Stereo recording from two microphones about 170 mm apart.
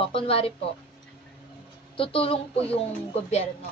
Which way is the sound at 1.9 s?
35° left (ahead or behind).